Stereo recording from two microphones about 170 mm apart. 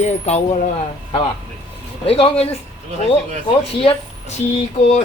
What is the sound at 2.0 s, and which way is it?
Speech, 35° left (ahead or behind).